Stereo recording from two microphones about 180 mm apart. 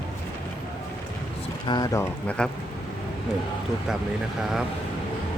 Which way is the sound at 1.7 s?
20° left (ahead or behind).